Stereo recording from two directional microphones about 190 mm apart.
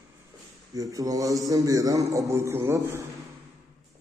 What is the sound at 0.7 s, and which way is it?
A man's voice, 20° right (ahead or behind).